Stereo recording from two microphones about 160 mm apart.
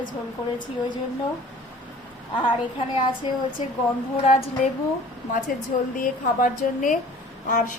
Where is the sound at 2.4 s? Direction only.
30° left (ahead or behind).